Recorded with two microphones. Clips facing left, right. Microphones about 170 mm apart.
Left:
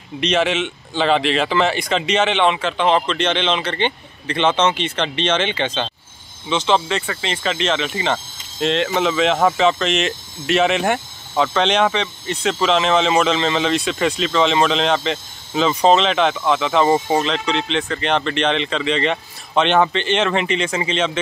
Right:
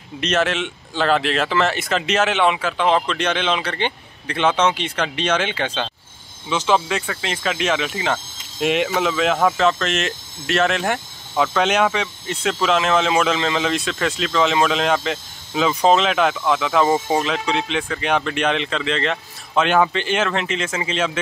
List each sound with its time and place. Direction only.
0.2 s speech: centre (ahead or behind)